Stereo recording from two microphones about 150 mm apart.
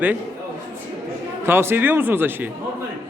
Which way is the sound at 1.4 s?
15° right (ahead or behind).